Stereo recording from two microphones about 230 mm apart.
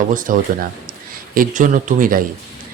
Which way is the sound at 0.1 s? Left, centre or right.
Right.